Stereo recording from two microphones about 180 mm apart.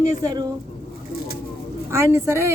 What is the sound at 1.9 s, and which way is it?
Speech, 15° right (ahead or behind).